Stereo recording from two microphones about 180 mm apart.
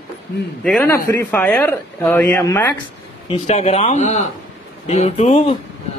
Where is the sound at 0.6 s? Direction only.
Centre (ahead or behind).